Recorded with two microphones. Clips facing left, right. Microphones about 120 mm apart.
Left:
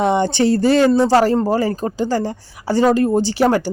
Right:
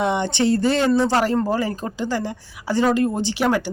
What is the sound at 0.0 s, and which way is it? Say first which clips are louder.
Speech: left 4 dB; 35° left (ahead or behind).